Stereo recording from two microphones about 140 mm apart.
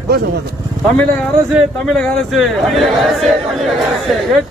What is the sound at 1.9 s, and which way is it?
A man's voice, 5° left (ahead or behind).